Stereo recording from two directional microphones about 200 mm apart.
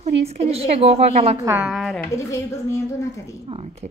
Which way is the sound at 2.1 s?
15° left (ahead or behind).